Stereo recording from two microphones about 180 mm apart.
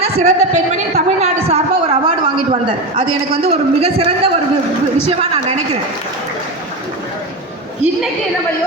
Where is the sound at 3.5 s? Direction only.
35° right (ahead or behind).